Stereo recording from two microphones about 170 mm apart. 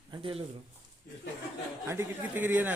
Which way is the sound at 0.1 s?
30° right (ahead or behind).